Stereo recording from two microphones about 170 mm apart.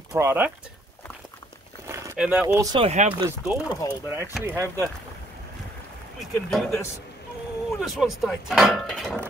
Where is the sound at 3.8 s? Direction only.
20° left (ahead or behind).